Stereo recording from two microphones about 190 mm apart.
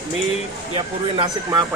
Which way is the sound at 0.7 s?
25° right (ahead or behind).